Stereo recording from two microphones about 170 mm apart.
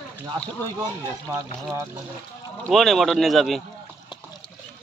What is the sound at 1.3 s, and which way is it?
Speech, 20° right (ahead or behind).